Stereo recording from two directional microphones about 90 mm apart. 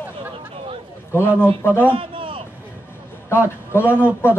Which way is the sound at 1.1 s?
25° left (ahead or behind).